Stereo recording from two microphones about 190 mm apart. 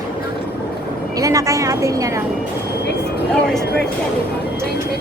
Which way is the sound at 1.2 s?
15° right (ahead or behind).